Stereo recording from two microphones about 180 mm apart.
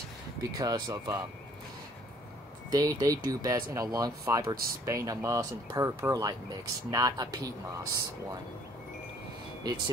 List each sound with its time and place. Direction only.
0.6 s speech: 20° right (ahead or behind)
2.7 s speech: 20° right (ahead or behind)
9.6 s speech: 25° right (ahead or behind)